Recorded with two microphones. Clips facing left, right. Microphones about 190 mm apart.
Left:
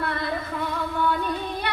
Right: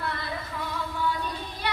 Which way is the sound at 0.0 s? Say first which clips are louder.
Left 5 dB; 60° left (ahead or behind).